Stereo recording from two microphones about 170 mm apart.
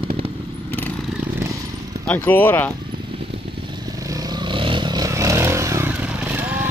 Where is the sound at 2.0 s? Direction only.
10° left (ahead or behind).